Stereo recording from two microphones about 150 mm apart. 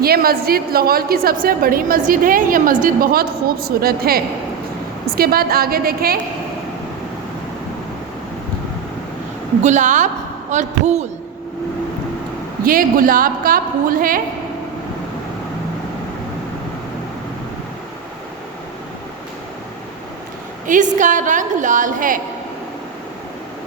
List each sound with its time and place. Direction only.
0.0 s a woman's voice: 90° right
9.6 s a woman's voice: 55° right (ahead or behind)
12.6 s a woman's voice: 70° right (ahead or behind)
20.7 s a woman's voice: 55° right (ahead or behind)